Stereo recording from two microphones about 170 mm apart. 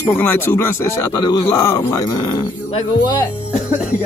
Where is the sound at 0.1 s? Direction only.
10° left (ahead or behind).